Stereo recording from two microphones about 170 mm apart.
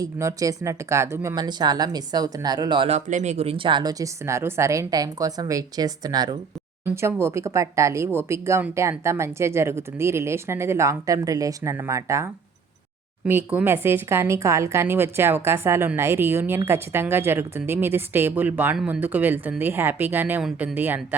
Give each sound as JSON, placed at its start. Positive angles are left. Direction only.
{"t": 0.0, "sound": "a woman's voice", "side_deg": -20}
{"t": 3.1, "sound": "a woman's voice", "side_deg": -45}